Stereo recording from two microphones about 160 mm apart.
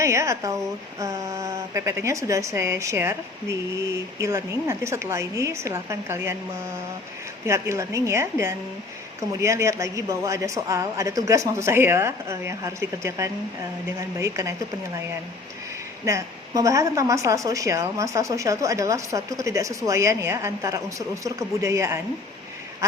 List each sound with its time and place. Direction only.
0.0 s a woman's voice: 20° right (ahead or behind)
7.4 s a woman's voice: 15° right (ahead or behind)
16.0 s speech: 20° right (ahead or behind)
22.8 s quack: 15° right (ahead or behind)